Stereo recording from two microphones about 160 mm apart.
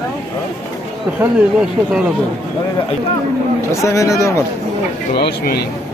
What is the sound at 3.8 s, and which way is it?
Speech, 20° left (ahead or behind).